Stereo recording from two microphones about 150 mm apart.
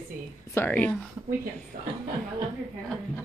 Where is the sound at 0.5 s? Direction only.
10° left (ahead or behind).